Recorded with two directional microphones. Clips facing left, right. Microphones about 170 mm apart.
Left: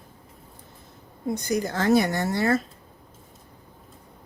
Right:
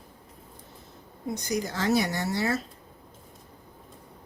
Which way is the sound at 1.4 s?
55° left (ahead or behind).